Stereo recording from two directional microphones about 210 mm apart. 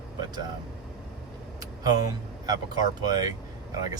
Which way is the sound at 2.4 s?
20° right (ahead or behind).